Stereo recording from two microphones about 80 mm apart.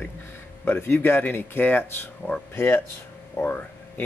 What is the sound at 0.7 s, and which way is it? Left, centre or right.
Speech, left.